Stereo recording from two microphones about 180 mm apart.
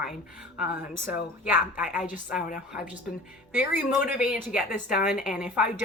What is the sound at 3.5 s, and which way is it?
Speech, 10° right (ahead or behind).